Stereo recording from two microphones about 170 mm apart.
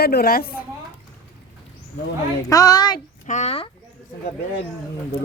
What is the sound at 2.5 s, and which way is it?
Speech, 20° left (ahead or behind).